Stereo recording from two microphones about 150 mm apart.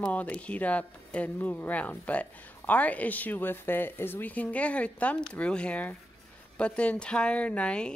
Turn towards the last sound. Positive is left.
turn(degrees=5)  # may be behind; listen again after turning